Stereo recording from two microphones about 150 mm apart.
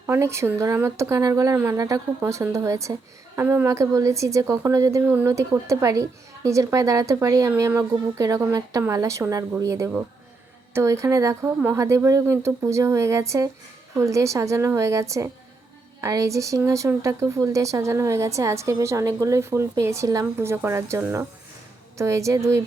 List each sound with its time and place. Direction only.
0.1 s a woman's voice: 20° right (ahead or behind)